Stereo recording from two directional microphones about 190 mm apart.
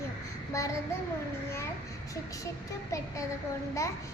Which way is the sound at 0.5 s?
15° left (ahead or behind).